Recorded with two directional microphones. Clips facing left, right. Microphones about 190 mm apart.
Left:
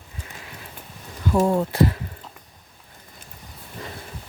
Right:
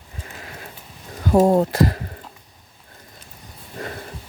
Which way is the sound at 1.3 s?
40° right (ahead or behind).